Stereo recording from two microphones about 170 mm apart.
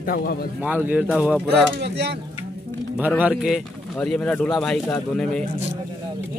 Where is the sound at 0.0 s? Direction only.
60° left (ahead or behind).